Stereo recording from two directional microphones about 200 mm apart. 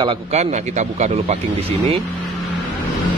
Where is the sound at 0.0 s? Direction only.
30° right (ahead or behind).